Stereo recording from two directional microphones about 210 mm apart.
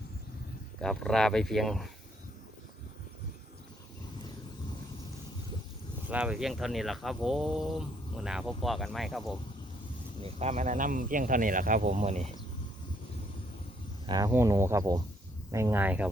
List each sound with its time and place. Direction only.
0.8 s speech: centre (ahead or behind)
6.1 s speech: 5° right (ahead or behind)
10.2 s speech: 30° right (ahead or behind)
14.1 s speech: 15° right (ahead or behind)